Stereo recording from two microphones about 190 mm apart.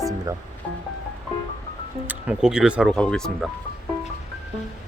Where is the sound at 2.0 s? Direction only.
5° right (ahead or behind).